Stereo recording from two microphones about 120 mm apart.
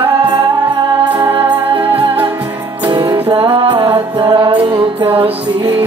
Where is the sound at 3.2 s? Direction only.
50° right (ahead or behind).